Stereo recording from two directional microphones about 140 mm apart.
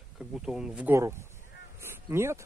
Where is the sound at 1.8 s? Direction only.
15° right (ahead or behind).